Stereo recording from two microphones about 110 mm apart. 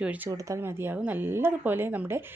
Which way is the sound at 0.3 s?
30° right (ahead or behind).